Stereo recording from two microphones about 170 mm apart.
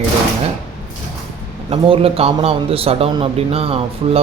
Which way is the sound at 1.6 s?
35° right (ahead or behind).